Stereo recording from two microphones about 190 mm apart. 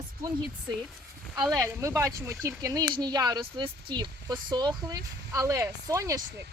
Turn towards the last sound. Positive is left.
turn(degrees=-15)  # may be behind; listen again after turning